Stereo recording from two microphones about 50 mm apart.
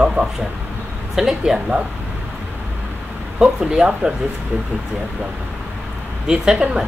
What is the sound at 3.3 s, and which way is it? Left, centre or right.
Speech, centre.